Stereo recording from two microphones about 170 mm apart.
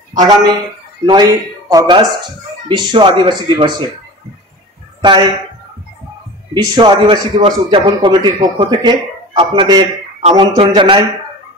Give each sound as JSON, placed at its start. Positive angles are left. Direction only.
{"t": 0.1, "sound": "a man's voice", "side_deg": -20}
{"t": 5.0, "sound": "a man's voice", "side_deg": -25}
{"t": 6.5, "sound": "a man's voice", "side_deg": -25}